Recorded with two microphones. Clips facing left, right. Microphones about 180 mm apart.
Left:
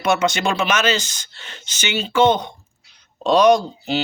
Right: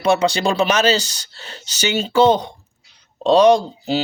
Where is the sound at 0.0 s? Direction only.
30° right (ahead or behind).